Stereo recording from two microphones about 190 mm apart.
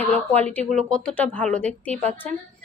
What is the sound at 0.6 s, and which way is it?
Speech, 40° right (ahead or behind).